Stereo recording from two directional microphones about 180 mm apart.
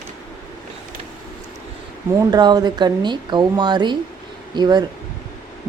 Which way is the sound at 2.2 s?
20° right (ahead or behind).